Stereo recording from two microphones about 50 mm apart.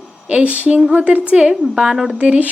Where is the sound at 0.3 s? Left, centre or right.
Right; by 2.1 s centre.